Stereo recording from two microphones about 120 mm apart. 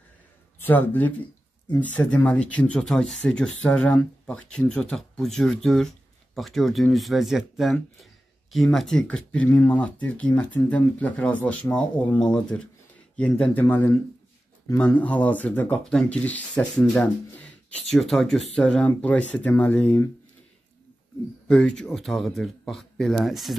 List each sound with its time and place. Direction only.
0.6 s a man's voice: 15° left (ahead or behind)
21.5 s speech: 5° left (ahead or behind)